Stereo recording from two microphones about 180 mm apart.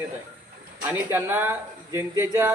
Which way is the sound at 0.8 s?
10° right (ahead or behind).